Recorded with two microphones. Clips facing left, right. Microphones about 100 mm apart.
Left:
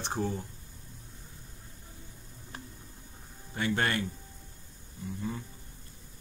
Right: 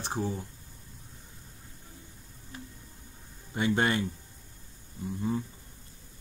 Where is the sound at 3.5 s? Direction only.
20° right (ahead or behind).